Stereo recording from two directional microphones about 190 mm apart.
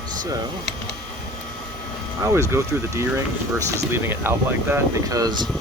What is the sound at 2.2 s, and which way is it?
Speech, 15° right (ahead or behind).